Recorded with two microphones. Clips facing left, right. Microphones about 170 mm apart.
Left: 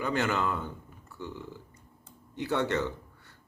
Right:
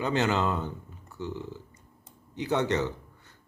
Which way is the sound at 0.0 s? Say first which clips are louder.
Right 3 dB; 20° right (ahead or behind).